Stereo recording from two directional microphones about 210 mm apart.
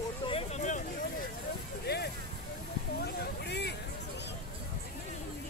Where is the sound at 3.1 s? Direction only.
50° left (ahead or behind).